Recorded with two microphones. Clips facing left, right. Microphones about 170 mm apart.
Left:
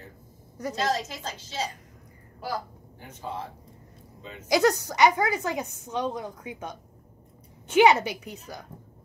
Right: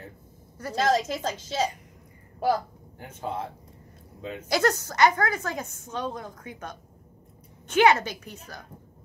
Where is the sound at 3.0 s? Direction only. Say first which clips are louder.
Right 4 dB; 55° right (ahead or behind).